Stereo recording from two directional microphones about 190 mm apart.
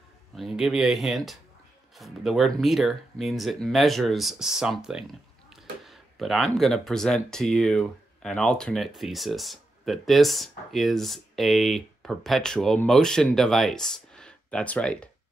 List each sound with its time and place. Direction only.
0.4 s speech: centre (ahead or behind)